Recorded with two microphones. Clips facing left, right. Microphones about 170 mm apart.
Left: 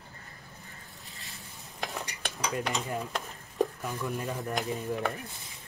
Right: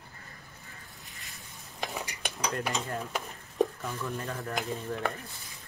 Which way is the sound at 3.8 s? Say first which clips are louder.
Left 2 dB; 15° left (ahead or behind).